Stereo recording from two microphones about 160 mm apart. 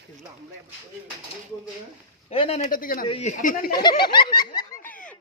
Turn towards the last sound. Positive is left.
turn(degrees=25)  # may be behind; listen again after turning